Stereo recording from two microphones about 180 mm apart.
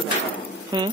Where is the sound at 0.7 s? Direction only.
25° right (ahead or behind).